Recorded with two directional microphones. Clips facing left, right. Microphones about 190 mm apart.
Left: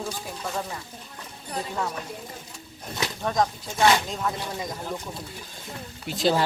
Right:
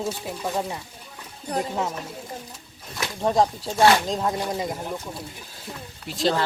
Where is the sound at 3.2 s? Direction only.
30° right (ahead or behind).